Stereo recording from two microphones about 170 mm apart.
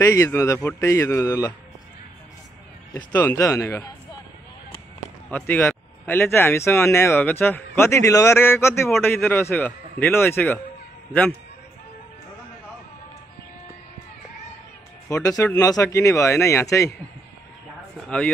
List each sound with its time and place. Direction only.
0.0 s speech: 15° left (ahead or behind)
3.0 s speech: 10° left (ahead or behind)
5.3 s speech: 10° left (ahead or behind)
15.0 s speech: 20° left (ahead or behind)
18.0 s speech: 5° left (ahead or behind)